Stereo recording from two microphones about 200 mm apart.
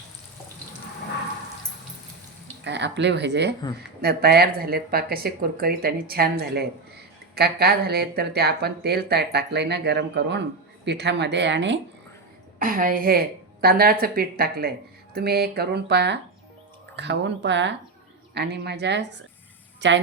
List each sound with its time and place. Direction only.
2.6 s speech: 60° right (ahead or behind)
12.5 s speech: 45° right (ahead or behind); by 20.0 s 65° right (ahead or behind)